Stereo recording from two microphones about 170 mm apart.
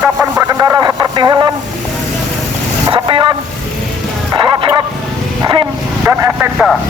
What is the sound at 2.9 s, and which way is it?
Vehicle, 30° right (ahead or behind).